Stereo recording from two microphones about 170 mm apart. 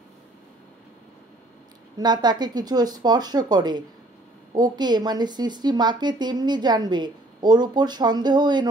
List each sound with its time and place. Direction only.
2.0 s a woman's voice: 25° right (ahead or behind)